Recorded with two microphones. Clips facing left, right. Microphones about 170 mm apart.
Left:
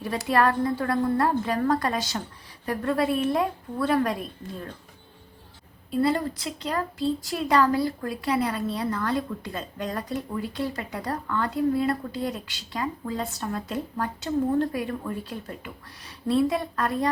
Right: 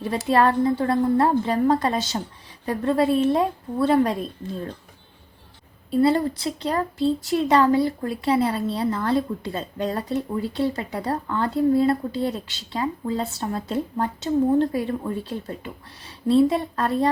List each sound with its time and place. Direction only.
0.0 s speech: 25° right (ahead or behind)
5.9 s speech: 30° right (ahead or behind)